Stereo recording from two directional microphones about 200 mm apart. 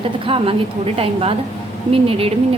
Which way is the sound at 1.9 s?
30° right (ahead or behind).